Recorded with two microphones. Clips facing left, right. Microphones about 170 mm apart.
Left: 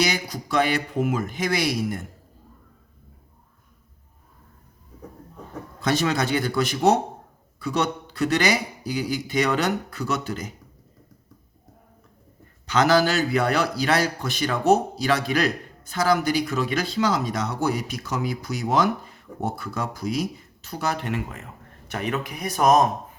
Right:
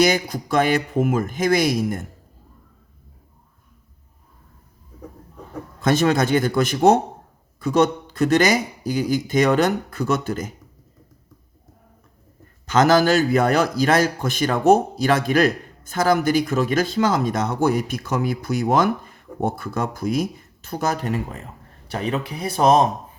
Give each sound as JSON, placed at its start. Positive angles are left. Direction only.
{"t": 0.0, "sound": "a man's voice", "side_deg": -50}
{"t": 5.8, "sound": "a man's voice", "side_deg": -50}
{"t": 12.6, "sound": "a man's voice", "side_deg": -45}